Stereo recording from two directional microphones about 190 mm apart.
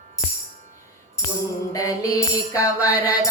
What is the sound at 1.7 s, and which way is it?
Child singing, 20° left (ahead or behind).